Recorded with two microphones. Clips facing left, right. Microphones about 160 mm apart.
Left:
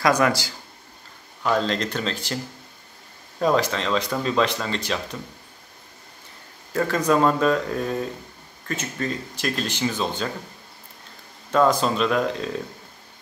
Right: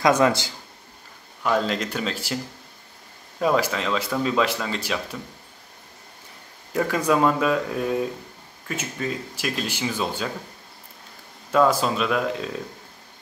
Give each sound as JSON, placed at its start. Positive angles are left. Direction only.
{"t": 0.0, "sound": "a man's voice", "side_deg": -25}
{"t": 1.4, "sound": "speech", "side_deg": -5}
{"t": 3.3, "sound": "speech", "side_deg": -5}
{"t": 6.7, "sound": "speech", "side_deg": -10}
{"t": 11.5, "sound": "speech", "side_deg": -5}